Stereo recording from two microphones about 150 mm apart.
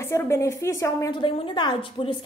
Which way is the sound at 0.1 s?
20° left (ahead or behind).